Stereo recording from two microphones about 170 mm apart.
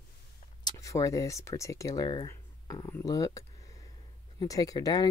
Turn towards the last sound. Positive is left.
turn(degrees=20)  # may be behind; listen again after turning